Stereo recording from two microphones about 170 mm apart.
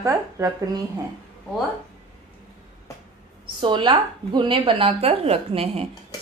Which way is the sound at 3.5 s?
25° right (ahead or behind).